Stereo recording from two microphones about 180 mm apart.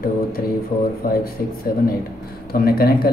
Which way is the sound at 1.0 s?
55° left (ahead or behind).